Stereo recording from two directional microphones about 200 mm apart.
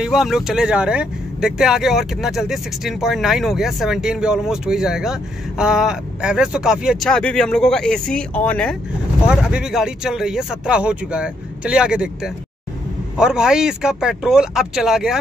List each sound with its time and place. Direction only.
0.0 s speech: centre (ahead or behind)